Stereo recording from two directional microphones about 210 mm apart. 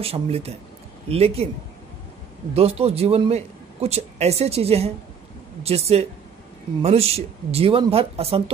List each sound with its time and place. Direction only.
0.0 s a man's voice: 30° right (ahead or behind)
2.5 s a man's voice: 30° right (ahead or behind)